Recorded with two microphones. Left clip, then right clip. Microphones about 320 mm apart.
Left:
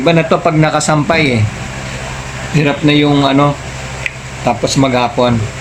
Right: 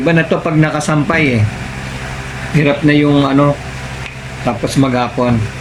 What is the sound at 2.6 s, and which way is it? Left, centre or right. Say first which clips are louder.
Speech: even; centre.